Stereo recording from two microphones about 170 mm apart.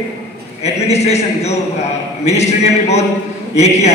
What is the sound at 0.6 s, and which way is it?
A man's voice, 40° left (ahead or behind).